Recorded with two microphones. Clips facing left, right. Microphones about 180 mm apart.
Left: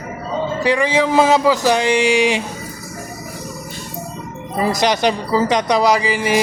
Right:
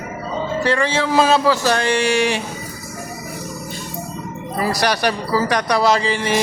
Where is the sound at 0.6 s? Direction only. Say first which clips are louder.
Left 3 dB; 15° left (ahead or behind).